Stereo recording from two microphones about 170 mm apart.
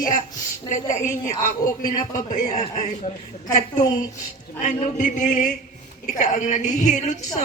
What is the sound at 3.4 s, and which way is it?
A woman's voice, 50° left (ahead or behind).